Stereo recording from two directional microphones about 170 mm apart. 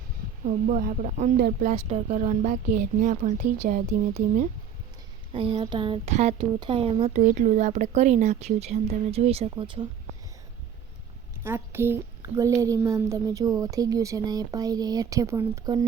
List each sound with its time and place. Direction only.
0.4 s speech: 50° right (ahead or behind)
5.3 s speech: 35° right (ahead or behind)
6.1 s speech: 40° right (ahead or behind)
11.4 s a woman's voice: 15° right (ahead or behind)